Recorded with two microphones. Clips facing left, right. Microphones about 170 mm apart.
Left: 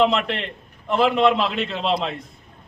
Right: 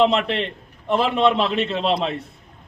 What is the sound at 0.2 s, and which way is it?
A man's voice, centre (ahead or behind).